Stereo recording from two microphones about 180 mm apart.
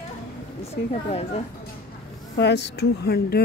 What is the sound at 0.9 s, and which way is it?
Speech, 35° left (ahead or behind).